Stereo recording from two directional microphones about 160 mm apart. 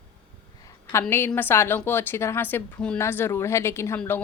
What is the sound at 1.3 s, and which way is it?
Speech, 10° left (ahead or behind).